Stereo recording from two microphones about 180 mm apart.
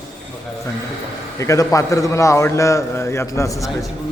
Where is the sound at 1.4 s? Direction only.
15° left (ahead or behind).